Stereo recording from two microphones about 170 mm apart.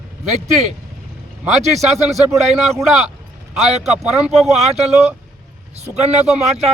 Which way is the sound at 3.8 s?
Centre (ahead or behind).